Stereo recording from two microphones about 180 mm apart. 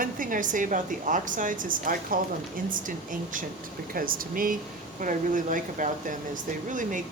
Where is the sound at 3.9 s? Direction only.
50° right (ahead or behind).